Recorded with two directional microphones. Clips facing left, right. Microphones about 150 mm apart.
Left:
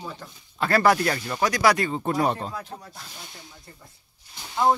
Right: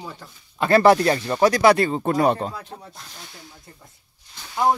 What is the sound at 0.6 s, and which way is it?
Speech, 25° right (ahead or behind).